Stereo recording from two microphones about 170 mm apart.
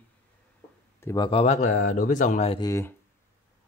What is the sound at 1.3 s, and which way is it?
Speech, 40° left (ahead or behind).